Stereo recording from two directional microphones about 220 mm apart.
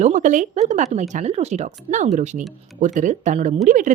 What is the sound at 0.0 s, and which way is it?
Speech, 35° right (ahead or behind).